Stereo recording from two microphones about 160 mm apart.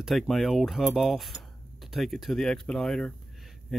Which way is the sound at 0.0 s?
Centre (ahead or behind).